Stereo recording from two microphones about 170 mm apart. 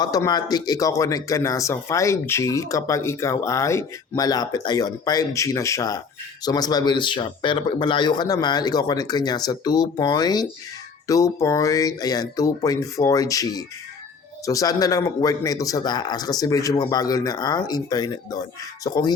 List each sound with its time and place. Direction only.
0.0 s speech: 20° left (ahead or behind)